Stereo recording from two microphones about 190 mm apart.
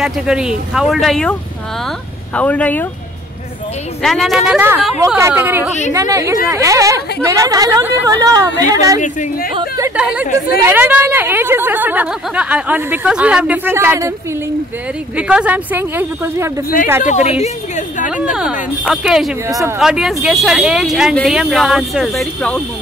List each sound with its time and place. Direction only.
0.0 s speech: 5° right (ahead or behind)
2.3 s speech: 5° left (ahead or behind)
4.0 s a woman's voice: centre (ahead or behind); by 9.0 s 20° right (ahead or behind)
9.0 s a woman's voice: 40° left (ahead or behind)
9.6 s a woman's voice: 15° right (ahead or behind)
9.9 s a woman's voice: 5° right (ahead or behind)
15.1 s a woman's voice: 5° right (ahead or behind)
17.0 s a woman's voice: 40° left (ahead or behind)
18.3 s speech: 5° right (ahead or behind)
19.4 s a woman's voice: 15° right (ahead or behind)
19.8 s speech: 5° right (ahead or behind)